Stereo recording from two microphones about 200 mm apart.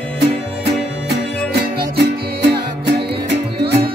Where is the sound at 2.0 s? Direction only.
55° right (ahead or behind).